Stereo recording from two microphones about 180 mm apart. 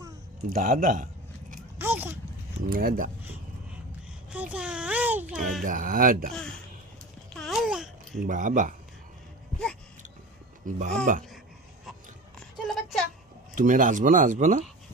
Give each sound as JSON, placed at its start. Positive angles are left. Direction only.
{"t": 0.5, "sound": "speech", "side_deg": -50}
{"t": 1.8, "sound": "a sound", "side_deg": -10}
{"t": 2.6, "sound": "speech", "side_deg": -50}
{"t": 4.3, "sound": "speech", "side_deg": -5}
{"t": 5.6, "sound": "speech", "side_deg": -50}
{"t": 6.3, "sound": "speech", "side_deg": 5}
{"t": 7.3, "sound": "a sound", "side_deg": 0}
{"t": 8.2, "sound": "speech", "side_deg": -45}
{"t": 10.7, "sound": "speech", "side_deg": -40}
{"t": 12.6, "sound": "a sound", "side_deg": 0}
{"t": 13.6, "sound": "speech", "side_deg": -45}